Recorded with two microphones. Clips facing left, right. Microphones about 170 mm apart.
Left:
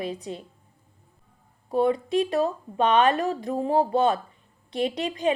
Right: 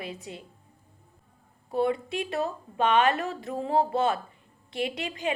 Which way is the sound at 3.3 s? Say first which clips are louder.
Left 5 dB; 15° left (ahead or behind).